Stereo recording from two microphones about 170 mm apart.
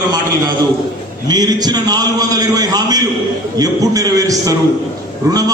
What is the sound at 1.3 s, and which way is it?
A man's voice, 25° right (ahead or behind).